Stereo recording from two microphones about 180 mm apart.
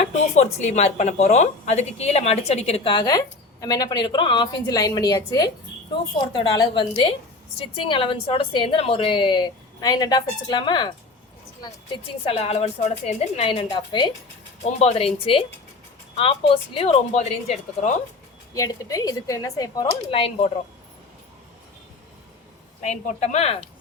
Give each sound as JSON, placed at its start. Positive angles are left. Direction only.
{"t": 0.0, "sound": "a woman's voice", "side_deg": 40}
{"t": 16.7, "sound": "a woman's voice", "side_deg": 35}
{"t": 18.5, "sound": "a woman's voice", "side_deg": 20}
{"t": 22.8, "sound": "a woman's voice", "side_deg": 40}